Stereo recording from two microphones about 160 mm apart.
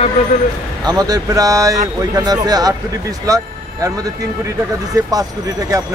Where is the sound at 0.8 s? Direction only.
25° right (ahead or behind).